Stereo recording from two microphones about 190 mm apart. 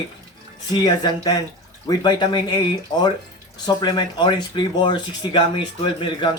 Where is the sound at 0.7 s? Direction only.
20° left (ahead or behind).